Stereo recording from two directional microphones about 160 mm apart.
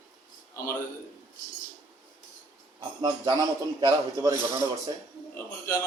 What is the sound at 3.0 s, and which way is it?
A man's voice, 20° right (ahead or behind).